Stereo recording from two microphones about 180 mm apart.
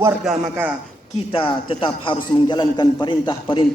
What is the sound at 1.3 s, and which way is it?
A man's voice, 30° left (ahead or behind).